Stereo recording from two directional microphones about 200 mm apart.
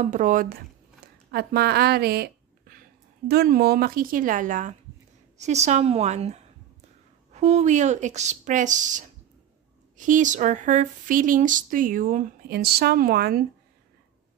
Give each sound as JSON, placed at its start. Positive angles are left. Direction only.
{"t": 0.0, "sound": "a woman's voice", "side_deg": -40}